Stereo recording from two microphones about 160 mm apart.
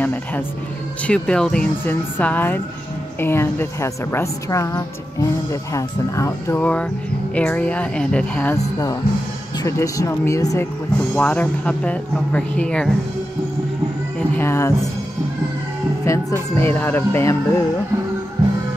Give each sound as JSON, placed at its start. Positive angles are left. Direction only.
{"t": 0.0, "sound": "a woman's voice", "side_deg": 10}
{"t": 9.6, "sound": "speech", "side_deg": 20}
{"t": 11.1, "sound": "a woman's voice", "side_deg": 10}
{"t": 14.3, "sound": "a woman's voice", "side_deg": 15}
{"t": 16.1, "sound": "a woman's voice", "side_deg": 20}